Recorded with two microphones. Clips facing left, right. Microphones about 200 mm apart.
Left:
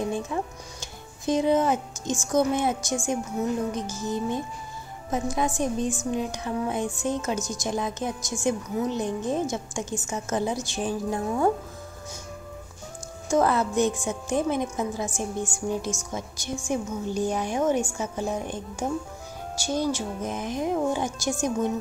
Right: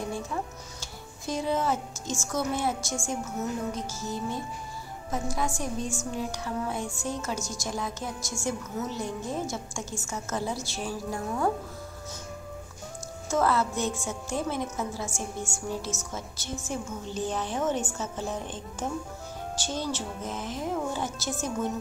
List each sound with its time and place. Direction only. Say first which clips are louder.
0.1 s a woman's voice: left 4 dB; 20° left (ahead or behind)
13.3 s a woman's voice: left 3 dB; 15° left (ahead or behind)